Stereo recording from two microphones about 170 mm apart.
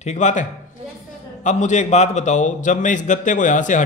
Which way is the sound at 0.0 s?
45° left (ahead or behind).